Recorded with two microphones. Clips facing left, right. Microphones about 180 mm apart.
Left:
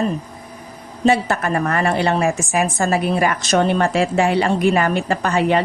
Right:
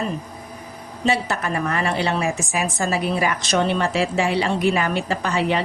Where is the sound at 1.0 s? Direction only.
50° left (ahead or behind).